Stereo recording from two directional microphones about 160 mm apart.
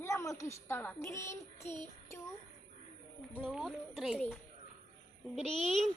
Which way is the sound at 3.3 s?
5° left (ahead or behind).